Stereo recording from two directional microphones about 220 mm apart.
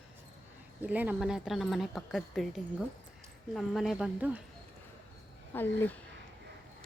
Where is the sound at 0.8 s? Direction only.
10° right (ahead or behind).